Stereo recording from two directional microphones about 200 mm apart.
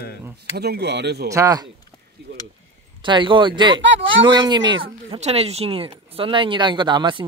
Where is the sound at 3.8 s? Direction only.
65° right (ahead or behind).